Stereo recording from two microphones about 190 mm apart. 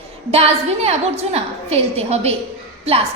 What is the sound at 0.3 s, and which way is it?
A woman's voice, 30° right (ahead or behind).